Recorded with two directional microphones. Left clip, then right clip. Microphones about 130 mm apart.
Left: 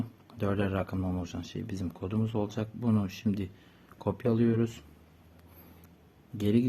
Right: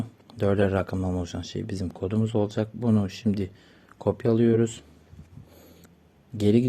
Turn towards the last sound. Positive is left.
turn(degrees=-40)  # may be behind; listen again after turning